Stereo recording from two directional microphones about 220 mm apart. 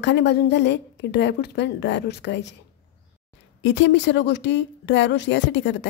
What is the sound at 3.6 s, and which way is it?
A woman's voice, 55° left (ahead or behind).